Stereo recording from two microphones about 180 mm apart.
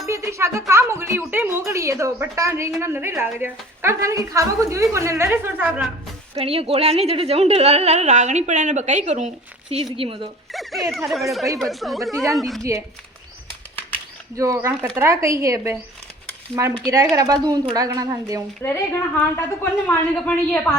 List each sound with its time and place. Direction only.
0.1 s music: 15° right (ahead or behind)
0.7 s a woman's voice: 15° right (ahead or behind)
6.3 s speech: 30° right (ahead or behind)
9.8 s a woman's voice: 30° right (ahead or behind)
10.5 s a sound: centre (ahead or behind)
10.9 s speech: centre (ahead or behind)
14.3 s a woman's voice: 20° right (ahead or behind)
18.6 s a woman's voice: 15° left (ahead or behind)